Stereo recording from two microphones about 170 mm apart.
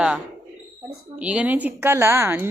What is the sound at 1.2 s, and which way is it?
A woman's voice, 5° right (ahead or behind).